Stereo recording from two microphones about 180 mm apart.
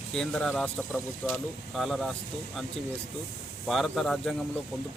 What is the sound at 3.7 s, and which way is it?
Speech, centre (ahead or behind).